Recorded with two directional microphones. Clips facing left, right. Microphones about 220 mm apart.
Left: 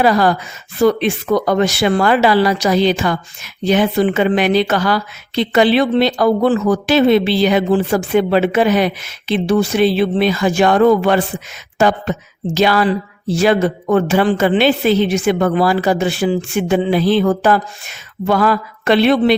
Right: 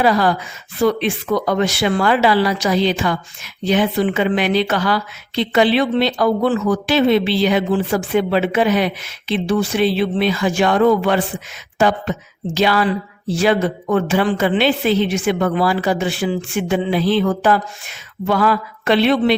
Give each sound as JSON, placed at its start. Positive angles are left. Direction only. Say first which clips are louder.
{"t": 0.0, "sound": "speech", "louder": "left 2 dB", "side_deg": 45}